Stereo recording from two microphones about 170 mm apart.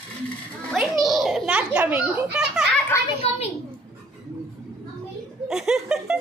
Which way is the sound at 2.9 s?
15° left (ahead or behind).